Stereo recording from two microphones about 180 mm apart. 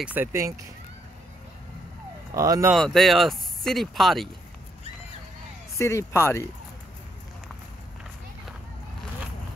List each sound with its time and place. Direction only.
0.0 s speech: 10° right (ahead or behind)
2.3 s speech: 20° right (ahead or behind)
2.7 s speech: centre (ahead or behind)
5.8 s speech: 15° left (ahead or behind)